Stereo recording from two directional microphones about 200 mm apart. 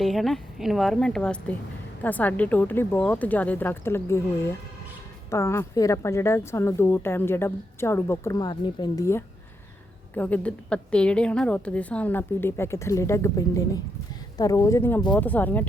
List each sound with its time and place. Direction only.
0.0 s a woman's voice: centre (ahead or behind)